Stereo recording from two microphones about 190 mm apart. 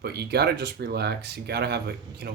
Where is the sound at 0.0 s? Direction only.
60° right (ahead or behind).